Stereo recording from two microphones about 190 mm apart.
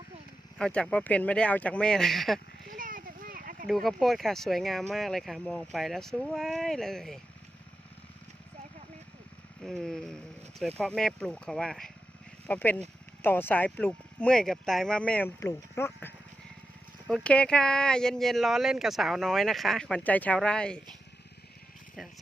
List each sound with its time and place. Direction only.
0.6 s speech: 5° left (ahead or behind)
2.6 s a sound: 45° right (ahead or behind)
3.7 s speech: centre (ahead or behind)
9.6 s speech: 5° left (ahead or behind)